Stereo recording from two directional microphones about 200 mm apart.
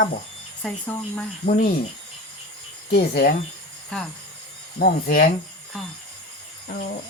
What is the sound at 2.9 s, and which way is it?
Speech, 55° left (ahead or behind).